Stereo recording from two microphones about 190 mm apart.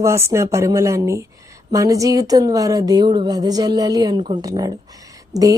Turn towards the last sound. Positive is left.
turn(degrees=-15)  # may be behind; listen again after turning